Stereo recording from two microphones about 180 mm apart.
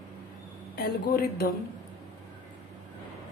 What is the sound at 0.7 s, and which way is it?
Speech, 60° left (ahead or behind).